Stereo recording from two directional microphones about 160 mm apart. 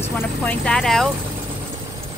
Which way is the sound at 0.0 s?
10° left (ahead or behind).